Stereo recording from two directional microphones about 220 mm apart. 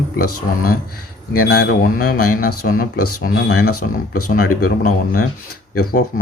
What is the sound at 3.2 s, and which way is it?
Speech, 45° left (ahead or behind).